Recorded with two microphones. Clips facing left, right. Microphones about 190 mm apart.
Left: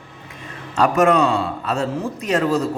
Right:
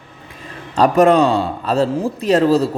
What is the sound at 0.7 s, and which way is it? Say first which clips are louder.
Speech: right 4 dB; 35° right (ahead or behind).